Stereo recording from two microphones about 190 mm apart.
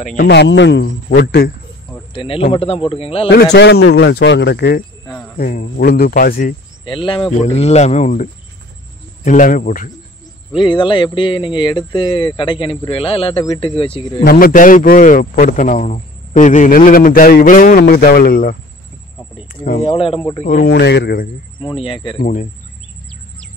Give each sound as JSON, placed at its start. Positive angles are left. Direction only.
{"t": 0.0, "sound": "a man's voice", "side_deg": 45}
{"t": 0.3, "sound": "speech", "side_deg": 70}
{"t": 2.1, "sound": "speech", "side_deg": 30}
{"t": 3.5, "sound": "speech", "side_deg": 65}
{"t": 5.0, "sound": "cricket", "side_deg": 10}
{"t": 5.4, "sound": "a man's voice", "side_deg": 50}
{"t": 6.8, "sound": "a man's voice", "side_deg": 25}
{"t": 10.5, "sound": "speech", "side_deg": 25}
{"t": 14.2, "sound": "a man's voice", "side_deg": 50}
{"t": 19.8, "sound": "speech", "side_deg": 30}
{"t": 20.6, "sound": "speech", "side_deg": 60}
{"t": 21.5, "sound": "speech", "side_deg": 25}
{"t": 22.2, "sound": "speech", "side_deg": 40}